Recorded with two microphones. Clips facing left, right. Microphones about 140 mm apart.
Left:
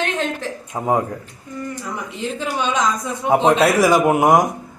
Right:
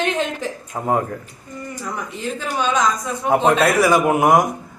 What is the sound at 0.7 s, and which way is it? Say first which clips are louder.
Speech: left 2 dB; 10° left (ahead or behind).